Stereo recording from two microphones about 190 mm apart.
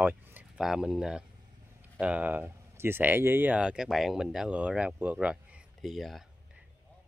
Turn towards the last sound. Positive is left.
turn(degrees=0)  # may be behind; listen again after turning